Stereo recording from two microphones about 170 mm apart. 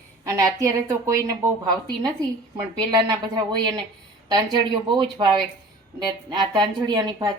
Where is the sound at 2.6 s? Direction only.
20° right (ahead or behind).